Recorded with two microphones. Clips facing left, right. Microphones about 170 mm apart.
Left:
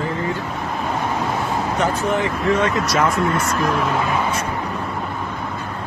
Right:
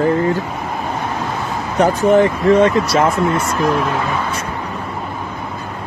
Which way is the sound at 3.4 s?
Centre (ahead or behind).